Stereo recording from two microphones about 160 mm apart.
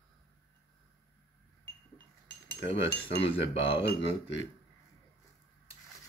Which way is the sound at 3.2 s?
35° left (ahead or behind).